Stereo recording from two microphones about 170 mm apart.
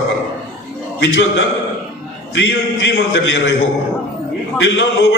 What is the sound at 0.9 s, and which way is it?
A man's voice, 90° left.